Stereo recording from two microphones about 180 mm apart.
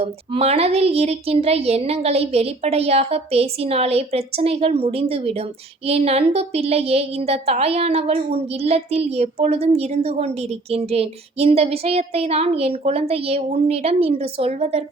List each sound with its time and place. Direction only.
0.0 s speech: 35° right (ahead or behind)